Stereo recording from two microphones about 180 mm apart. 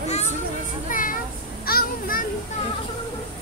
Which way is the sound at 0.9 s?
50° left (ahead or behind).